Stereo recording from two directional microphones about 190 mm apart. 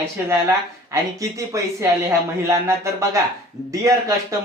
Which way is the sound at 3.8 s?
15° right (ahead or behind).